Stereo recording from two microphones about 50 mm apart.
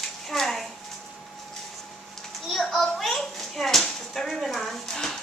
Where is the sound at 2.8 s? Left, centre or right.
Centre.